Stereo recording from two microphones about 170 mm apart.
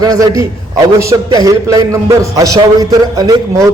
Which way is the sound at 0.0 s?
20° right (ahead or behind).